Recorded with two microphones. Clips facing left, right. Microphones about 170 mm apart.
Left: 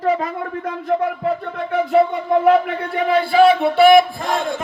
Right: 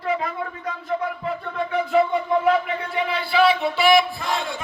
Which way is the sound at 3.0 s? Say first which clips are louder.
Left 7 dB; 50° left (ahead or behind).